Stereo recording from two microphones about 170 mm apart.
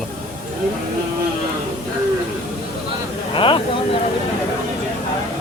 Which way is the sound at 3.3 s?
30° left (ahead or behind).